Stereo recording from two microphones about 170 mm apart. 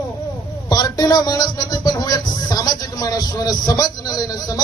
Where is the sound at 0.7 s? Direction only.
20° left (ahead or behind).